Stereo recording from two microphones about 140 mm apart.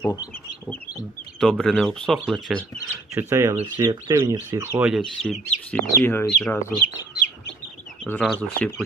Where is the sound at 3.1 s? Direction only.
20° right (ahead or behind).